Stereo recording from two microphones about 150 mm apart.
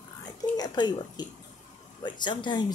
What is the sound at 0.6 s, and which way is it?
Speech, 30° left (ahead or behind).